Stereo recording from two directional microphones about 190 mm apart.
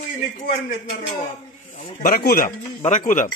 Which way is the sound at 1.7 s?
50° left (ahead or behind).